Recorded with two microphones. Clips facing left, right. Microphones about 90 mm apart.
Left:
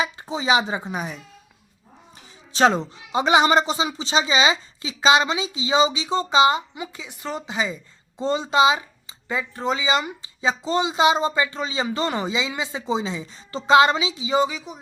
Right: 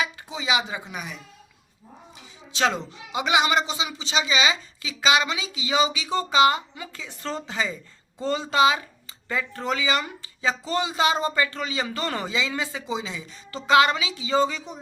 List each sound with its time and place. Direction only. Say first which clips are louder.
0.0 s speech: left 4 dB; 35° left (ahead or behind)
2.5 s speech: left 6 dB; 35° left (ahead or behind); by 14.8 s 5° left (ahead or behind)